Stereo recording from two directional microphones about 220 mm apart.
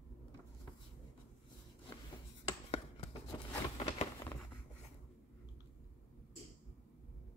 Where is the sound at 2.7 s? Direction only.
25° left (ahead or behind).